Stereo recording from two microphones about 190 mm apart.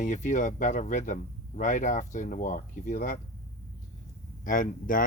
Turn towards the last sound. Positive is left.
turn(degrees=45)  # may be behind; listen again after turning